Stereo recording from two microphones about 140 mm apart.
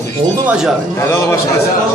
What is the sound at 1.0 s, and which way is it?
Speech, 20° left (ahead or behind).